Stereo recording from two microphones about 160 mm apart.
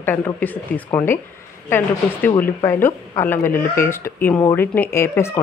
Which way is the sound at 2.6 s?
15° left (ahead or behind).